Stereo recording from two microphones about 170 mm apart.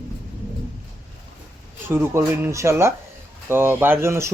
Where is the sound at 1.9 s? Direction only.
15° right (ahead or behind).